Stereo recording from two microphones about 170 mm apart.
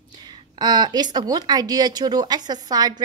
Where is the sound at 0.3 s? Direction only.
25° right (ahead or behind).